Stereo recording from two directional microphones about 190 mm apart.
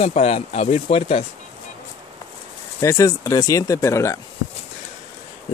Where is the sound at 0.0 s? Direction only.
35° left (ahead or behind).